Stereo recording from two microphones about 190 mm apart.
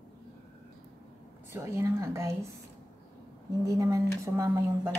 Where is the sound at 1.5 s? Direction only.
15° right (ahead or behind).